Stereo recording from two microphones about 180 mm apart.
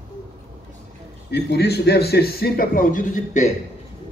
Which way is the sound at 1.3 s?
65° left (ahead or behind).